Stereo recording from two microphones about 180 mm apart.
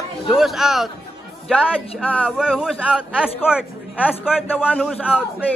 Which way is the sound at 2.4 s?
5° right (ahead or behind).